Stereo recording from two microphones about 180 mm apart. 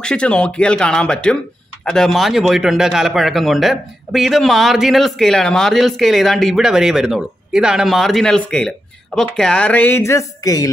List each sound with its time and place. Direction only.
0.0 s a man's voice: 5° left (ahead or behind)